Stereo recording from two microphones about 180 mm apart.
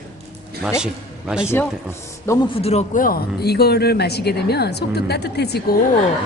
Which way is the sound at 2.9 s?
55° left (ahead or behind).